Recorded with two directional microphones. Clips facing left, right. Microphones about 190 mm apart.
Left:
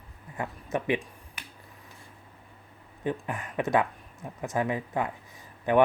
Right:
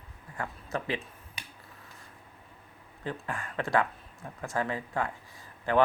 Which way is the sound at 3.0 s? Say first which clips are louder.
Left 5 dB; 20° left (ahead or behind).